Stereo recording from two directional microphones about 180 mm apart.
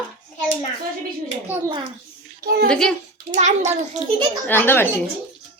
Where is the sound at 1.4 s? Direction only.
10° right (ahead or behind).